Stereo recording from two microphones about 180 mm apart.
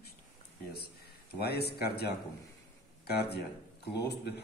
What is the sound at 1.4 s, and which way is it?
A man's voice, 60° left (ahead or behind).